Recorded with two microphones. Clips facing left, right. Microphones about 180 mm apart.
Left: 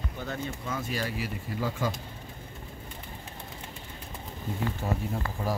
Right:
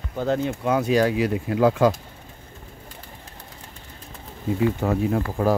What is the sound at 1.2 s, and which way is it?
Speech, 90° right.